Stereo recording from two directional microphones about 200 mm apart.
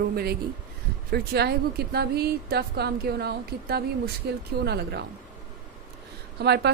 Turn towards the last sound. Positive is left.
turn(degrees=-55)  # may be behind; listen again after turning